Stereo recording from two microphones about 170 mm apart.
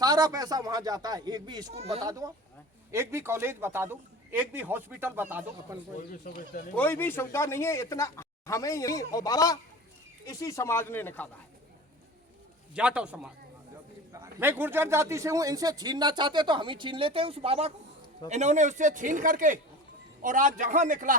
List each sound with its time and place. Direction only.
0.0 s a man's voice: 20° right (ahead or behind)
1.7 s speech: 40° right (ahead or behind)
2.0 s a man's voice: 20° right (ahead or behind)
6.5 s speech: 50° left (ahead or behind)
6.7 s speech: 10° left (ahead or behind)
12.7 s a man's voice: 5° right (ahead or behind); by 21.2 s 50° right (ahead or behind)